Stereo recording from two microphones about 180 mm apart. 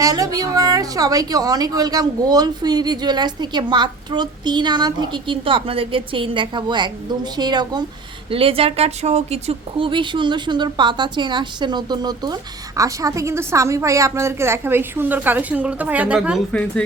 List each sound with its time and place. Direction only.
0.0 s speech: 20° right (ahead or behind)
16.5 s speech: 5° left (ahead or behind)